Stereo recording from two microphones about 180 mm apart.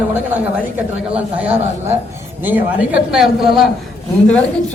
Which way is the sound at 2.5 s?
10° right (ahead or behind).